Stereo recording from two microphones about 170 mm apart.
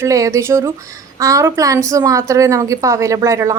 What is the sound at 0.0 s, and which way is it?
A woman's voice, 20° right (ahead or behind).